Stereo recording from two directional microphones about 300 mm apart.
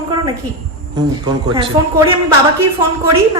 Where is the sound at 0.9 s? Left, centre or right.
Centre.